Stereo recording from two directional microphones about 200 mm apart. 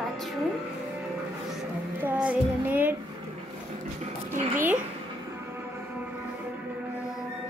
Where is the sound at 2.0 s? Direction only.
10° right (ahead or behind).